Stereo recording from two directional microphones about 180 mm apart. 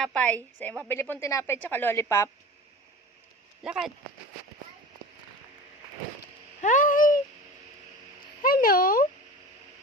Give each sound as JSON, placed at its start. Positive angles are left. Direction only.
{"t": 0.0, "sound": "a woman's voice", "side_deg": 5}
{"t": 3.6, "sound": "speech", "side_deg": -5}
{"t": 6.6, "sound": "cat", "side_deg": 45}
{"t": 8.4, "sound": "speech", "side_deg": 55}